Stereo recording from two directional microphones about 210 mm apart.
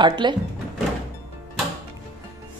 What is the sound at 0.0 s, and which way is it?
Speech, 20° right (ahead or behind).